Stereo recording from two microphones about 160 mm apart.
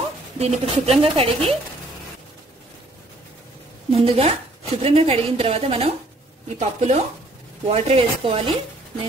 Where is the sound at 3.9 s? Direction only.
35° right (ahead or behind).